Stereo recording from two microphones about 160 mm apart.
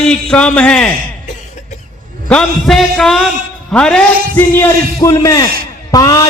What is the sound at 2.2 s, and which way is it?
A man's voice, 5° left (ahead or behind).